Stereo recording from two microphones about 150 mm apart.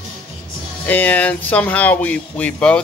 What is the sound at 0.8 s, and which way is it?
Speech, 10° left (ahead or behind).